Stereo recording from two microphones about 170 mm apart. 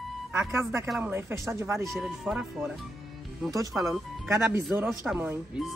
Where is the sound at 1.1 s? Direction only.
15° right (ahead or behind).